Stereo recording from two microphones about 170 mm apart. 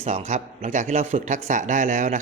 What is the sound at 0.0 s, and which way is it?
A man's voice, 40° right (ahead or behind).